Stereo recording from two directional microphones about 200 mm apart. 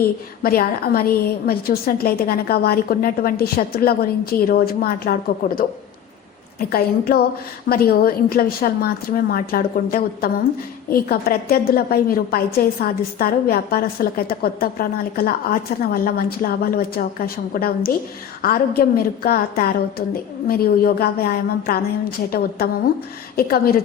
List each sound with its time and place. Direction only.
0.4 s a woman's voice: 50° left (ahead or behind)
6.6 s a woman's voice: 50° left (ahead or behind)